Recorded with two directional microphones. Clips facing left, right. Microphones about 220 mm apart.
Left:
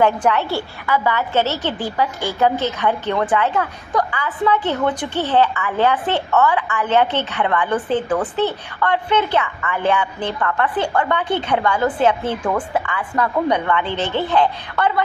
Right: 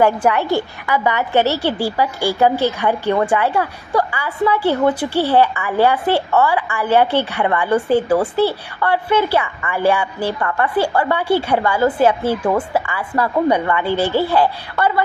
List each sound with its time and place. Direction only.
0.0 s a woman's voice: 10° right (ahead or behind)